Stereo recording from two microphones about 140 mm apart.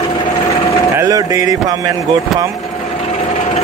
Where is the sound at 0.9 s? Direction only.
25° right (ahead or behind).